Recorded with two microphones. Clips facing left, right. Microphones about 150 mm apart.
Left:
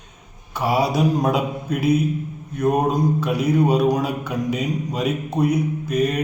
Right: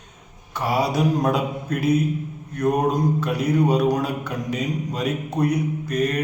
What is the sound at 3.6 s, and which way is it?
Speech, 20° left (ahead or behind).